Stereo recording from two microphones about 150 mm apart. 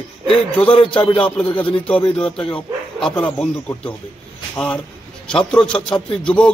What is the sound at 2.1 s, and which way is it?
A man's voice, 5° left (ahead or behind).